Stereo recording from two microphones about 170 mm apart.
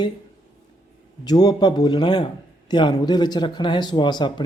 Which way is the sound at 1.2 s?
25° left (ahead or behind).